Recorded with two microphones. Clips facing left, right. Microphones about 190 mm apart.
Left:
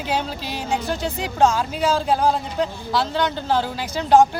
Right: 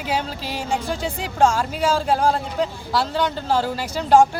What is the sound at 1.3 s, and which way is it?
Speech, centre (ahead or behind).